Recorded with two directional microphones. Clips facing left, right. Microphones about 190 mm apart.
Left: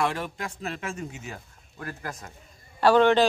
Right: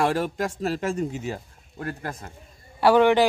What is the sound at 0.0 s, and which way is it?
Speech, 40° right (ahead or behind).